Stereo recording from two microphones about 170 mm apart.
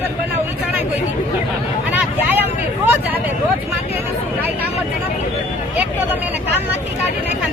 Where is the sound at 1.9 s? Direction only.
10° right (ahead or behind).